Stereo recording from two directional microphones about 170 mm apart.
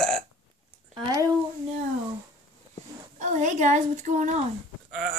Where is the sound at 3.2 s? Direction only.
45° right (ahead or behind).